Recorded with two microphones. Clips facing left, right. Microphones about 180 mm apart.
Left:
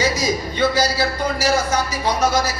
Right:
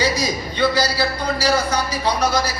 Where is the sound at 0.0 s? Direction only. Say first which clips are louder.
Left 1 dB; 45° left (ahead or behind).